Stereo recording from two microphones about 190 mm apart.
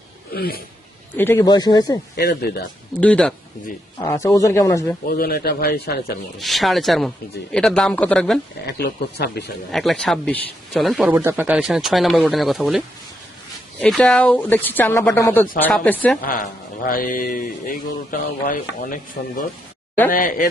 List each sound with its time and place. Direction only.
0.3 s speech: 55° left (ahead or behind)
1.1 s speech: 10° left (ahead or behind)
3.0 s speech: 5° left (ahead or behind)
4.1 s speech: 15° left (ahead or behind)
5.0 s speech: 50° left (ahead or behind)
6.4 s speech: centre (ahead or behind)
8.6 s speech: 60° left (ahead or behind)
9.7 s speech: centre (ahead or behind)
11.1 s speech: 10° right (ahead or behind)
13.8 s speech: 5° left (ahead or behind)
16.2 s a man's voice: 45° left (ahead or behind)